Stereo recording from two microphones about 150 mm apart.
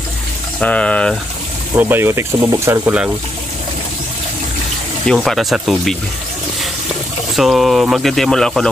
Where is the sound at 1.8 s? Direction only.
15° right (ahead or behind).